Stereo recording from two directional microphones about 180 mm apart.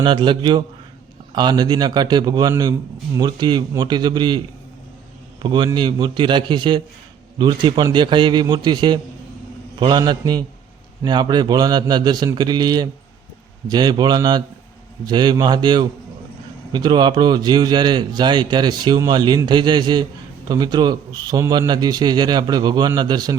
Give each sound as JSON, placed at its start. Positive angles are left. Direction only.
{"t": 0.0, "sound": "speech", "side_deg": -25}